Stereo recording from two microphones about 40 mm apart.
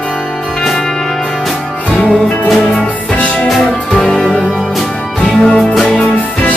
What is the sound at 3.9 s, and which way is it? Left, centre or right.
Music, centre.